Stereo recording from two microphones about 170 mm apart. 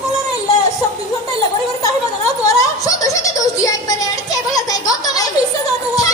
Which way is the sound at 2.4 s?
20° left (ahead or behind).